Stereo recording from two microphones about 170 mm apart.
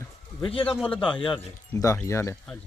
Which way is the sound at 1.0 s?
30° left (ahead or behind).